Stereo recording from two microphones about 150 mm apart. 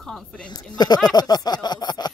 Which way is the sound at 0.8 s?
25° left (ahead or behind).